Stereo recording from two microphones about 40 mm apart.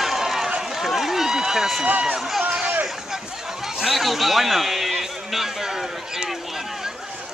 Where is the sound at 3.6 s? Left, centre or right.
Centre.